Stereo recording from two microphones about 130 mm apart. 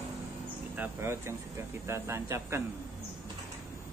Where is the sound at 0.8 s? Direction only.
20° right (ahead or behind).